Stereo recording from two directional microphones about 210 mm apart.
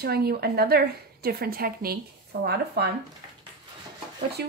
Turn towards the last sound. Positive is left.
turn(degrees=-50)  # may be behind; listen again after turning